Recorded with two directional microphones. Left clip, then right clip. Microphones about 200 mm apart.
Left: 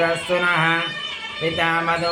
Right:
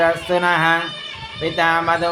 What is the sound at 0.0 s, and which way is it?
Speech, 35° right (ahead or behind).